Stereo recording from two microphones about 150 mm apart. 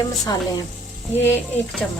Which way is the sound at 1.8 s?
5° left (ahead or behind).